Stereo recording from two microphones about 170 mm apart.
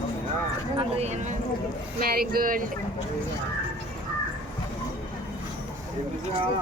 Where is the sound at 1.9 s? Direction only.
60° right (ahead or behind).